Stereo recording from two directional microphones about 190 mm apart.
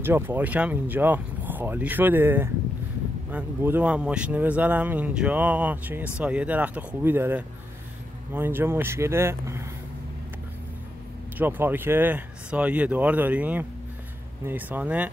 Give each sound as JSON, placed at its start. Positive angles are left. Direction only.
{"t": 0.0, "sound": "speech", "side_deg": -10}
{"t": 11.3, "sound": "speech", "side_deg": -10}